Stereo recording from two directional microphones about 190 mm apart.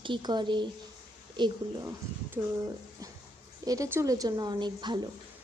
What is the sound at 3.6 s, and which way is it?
A woman's voice, 20° right (ahead or behind).